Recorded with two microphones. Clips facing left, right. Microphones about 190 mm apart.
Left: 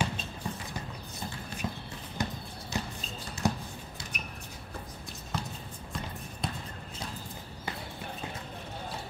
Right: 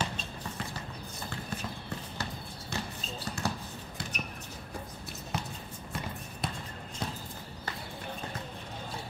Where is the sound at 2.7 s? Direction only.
60° right (ahead or behind).